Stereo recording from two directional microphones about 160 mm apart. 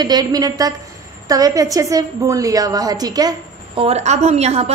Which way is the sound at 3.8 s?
45° right (ahead or behind).